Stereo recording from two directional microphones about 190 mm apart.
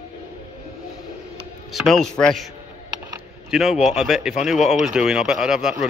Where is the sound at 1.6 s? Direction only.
Centre (ahead or behind).